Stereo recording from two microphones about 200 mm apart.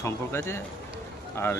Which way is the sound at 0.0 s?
10° left (ahead or behind).